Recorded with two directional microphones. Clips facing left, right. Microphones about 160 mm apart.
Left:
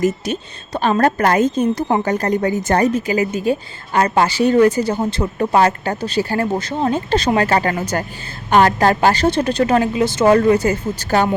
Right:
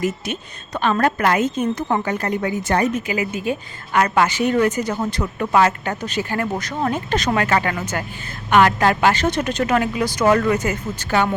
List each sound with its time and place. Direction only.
0.0 s a woman's voice: 35° left (ahead or behind)